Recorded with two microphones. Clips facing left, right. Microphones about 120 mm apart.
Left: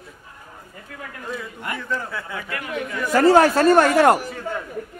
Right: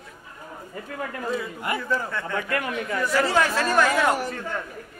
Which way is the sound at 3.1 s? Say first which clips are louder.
Left 9 dB; 45° left (ahead or behind).